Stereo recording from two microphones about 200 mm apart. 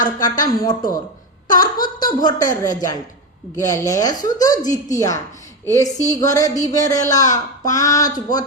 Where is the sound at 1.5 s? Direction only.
45° left (ahead or behind).